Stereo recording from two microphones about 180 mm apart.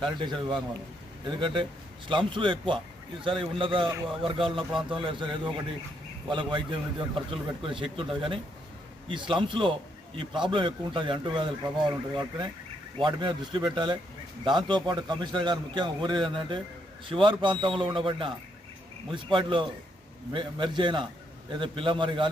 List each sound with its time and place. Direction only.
0.0 s speech: 25° right (ahead or behind)